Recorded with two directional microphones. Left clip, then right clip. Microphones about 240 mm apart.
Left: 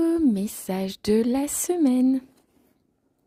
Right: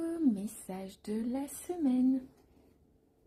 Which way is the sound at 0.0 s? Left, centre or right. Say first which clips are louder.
Left 13 dB; left.